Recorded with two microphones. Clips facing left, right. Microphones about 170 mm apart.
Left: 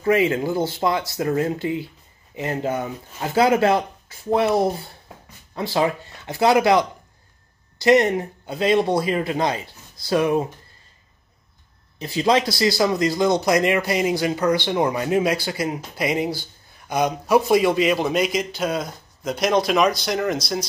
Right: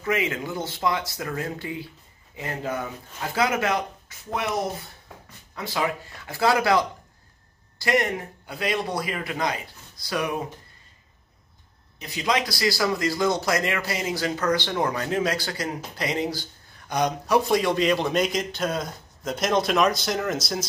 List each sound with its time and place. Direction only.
0.0 s speech: 30° left (ahead or behind)
12.0 s a man's voice: 30° left (ahead or behind); by 20.6 s 5° right (ahead or behind)